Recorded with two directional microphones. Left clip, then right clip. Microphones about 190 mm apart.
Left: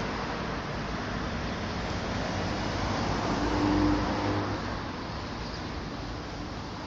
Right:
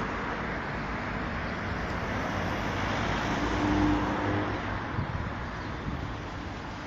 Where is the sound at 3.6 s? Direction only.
45° right (ahead or behind).